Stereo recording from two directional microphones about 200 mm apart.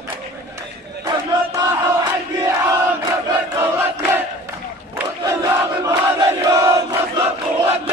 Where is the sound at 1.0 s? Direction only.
20° right (ahead or behind).